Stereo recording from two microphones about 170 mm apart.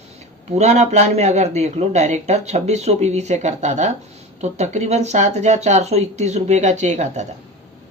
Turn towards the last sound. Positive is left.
turn(degrees=-45)  # may be behind; listen again after turning